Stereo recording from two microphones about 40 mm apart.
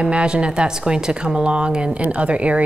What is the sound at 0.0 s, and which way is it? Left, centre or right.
A woman's voice, right.